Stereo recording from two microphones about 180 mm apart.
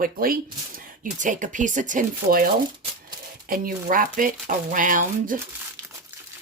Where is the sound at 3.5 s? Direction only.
50° right (ahead or behind).